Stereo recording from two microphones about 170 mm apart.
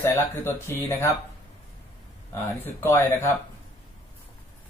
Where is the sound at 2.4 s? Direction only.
10° left (ahead or behind).